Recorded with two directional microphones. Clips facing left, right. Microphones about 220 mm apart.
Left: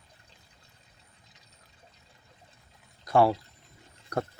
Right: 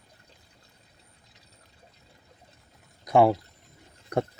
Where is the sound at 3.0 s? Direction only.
20° right (ahead or behind).